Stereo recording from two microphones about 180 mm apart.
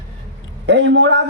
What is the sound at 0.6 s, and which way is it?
Speech, 75° right (ahead or behind).